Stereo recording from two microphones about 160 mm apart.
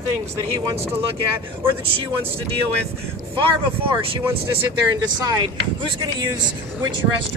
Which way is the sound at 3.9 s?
35° right (ahead or behind).